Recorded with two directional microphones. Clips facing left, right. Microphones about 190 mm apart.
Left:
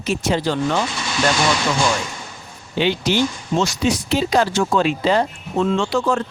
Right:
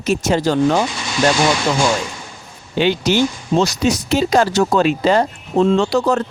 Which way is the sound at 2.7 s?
45° right (ahead or behind).